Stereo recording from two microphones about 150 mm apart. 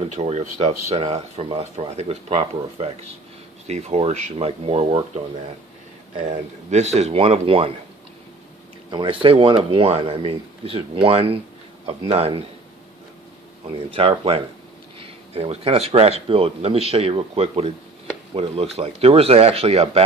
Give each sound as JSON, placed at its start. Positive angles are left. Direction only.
{"t": 0.1, "sound": "speech", "side_deg": -50}
{"t": 8.9, "sound": "a man's voice", "side_deg": -35}
{"t": 13.8, "sound": "a man's voice", "side_deg": -40}